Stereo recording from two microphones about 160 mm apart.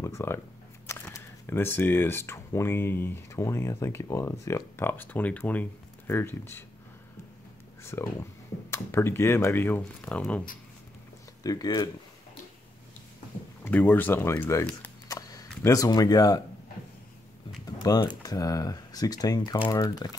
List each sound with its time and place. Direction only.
0.0 s speech: 15° left (ahead or behind)
7.8 s speech: 15° left (ahead or behind)
11.4 s speech: 25° left (ahead or behind)
13.7 s speech: 10° left (ahead or behind)
15.0 s camera: 20° left (ahead or behind)
17.6 s speech: 25° left (ahead or behind)